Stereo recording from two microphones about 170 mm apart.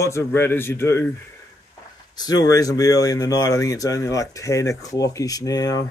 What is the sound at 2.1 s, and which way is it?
Speech, 20° left (ahead or behind).